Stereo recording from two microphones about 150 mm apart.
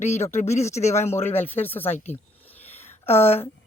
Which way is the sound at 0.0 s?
50° left (ahead or behind).